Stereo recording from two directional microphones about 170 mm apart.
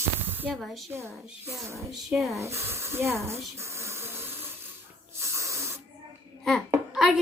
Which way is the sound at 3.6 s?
15° right (ahead or behind).